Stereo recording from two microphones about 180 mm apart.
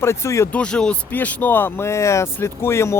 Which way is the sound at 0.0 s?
15° left (ahead or behind).